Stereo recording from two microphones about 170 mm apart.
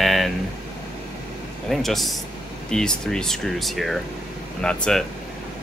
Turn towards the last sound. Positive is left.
turn(degrees=5)  # may be behind; listen again after turning